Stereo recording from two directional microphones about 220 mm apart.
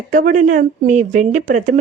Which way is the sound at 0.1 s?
35° right (ahead or behind).